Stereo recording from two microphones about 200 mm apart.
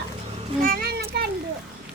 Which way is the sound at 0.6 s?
45° right (ahead or behind).